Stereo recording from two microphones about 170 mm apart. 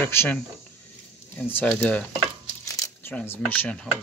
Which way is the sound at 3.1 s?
10° left (ahead or behind).